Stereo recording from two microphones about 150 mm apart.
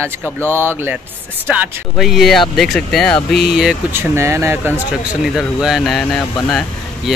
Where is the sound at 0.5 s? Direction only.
15° right (ahead or behind).